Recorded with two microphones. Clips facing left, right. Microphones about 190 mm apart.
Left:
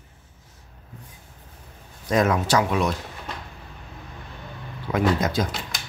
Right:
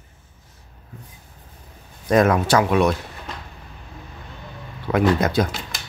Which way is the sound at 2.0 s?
55° right (ahead or behind).